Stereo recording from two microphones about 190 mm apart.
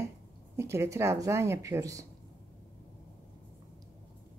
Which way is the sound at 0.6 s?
15° right (ahead or behind).